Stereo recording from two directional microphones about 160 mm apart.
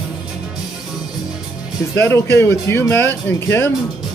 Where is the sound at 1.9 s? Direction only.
15° left (ahead or behind).